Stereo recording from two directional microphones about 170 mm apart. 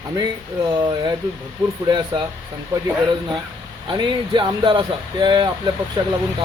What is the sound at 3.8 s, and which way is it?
Speech, 30° right (ahead or behind).